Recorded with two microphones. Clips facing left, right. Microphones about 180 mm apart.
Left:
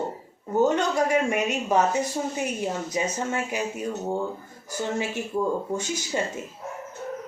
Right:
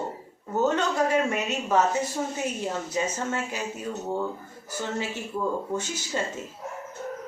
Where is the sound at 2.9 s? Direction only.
15° left (ahead or behind).